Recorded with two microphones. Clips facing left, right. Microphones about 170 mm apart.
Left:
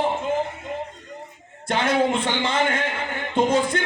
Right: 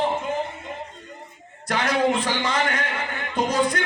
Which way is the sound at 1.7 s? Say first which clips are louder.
Left 1 dB; 25° left (ahead or behind).